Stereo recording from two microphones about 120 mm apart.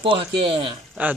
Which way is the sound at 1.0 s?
15° right (ahead or behind).